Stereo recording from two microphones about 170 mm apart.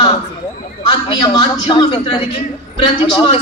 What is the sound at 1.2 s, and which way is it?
A man's voice, 25° left (ahead or behind).